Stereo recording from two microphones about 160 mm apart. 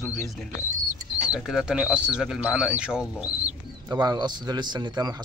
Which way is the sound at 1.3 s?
5° right (ahead or behind).